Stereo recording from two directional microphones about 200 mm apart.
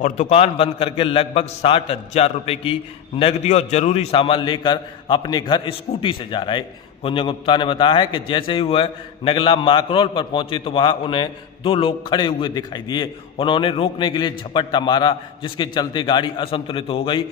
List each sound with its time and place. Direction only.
0.0 s a man's voice: 35° left (ahead or behind)